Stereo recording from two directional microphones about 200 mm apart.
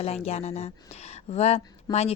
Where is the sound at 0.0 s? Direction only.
30° left (ahead or behind).